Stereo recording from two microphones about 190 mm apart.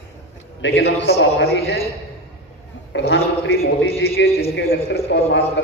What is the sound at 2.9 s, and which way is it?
Speech, 65° left (ahead or behind).